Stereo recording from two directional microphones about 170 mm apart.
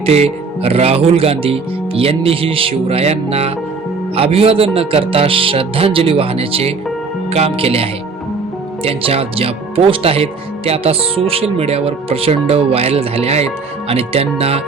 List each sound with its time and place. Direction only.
0.0 s speech: 35° right (ahead or behind)